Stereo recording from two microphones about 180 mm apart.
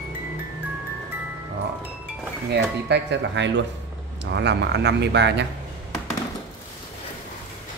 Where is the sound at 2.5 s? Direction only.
70° right (ahead or behind).